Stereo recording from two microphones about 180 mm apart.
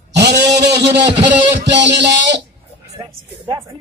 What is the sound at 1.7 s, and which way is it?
Speech, 75° right (ahead or behind).